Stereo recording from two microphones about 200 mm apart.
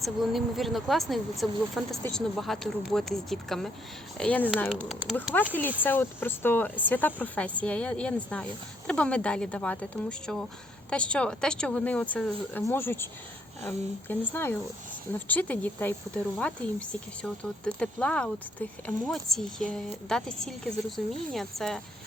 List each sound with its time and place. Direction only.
0.0 s speech: centre (ahead or behind)